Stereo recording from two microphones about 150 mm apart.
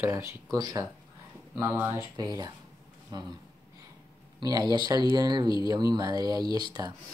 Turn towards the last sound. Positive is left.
turn(degrees=-25)  # may be behind; listen again after turning